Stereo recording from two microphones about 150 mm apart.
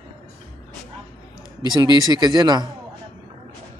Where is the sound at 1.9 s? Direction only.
25° right (ahead or behind).